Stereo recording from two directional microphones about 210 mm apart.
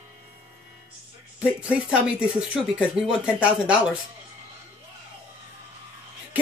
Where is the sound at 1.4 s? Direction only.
5° right (ahead or behind).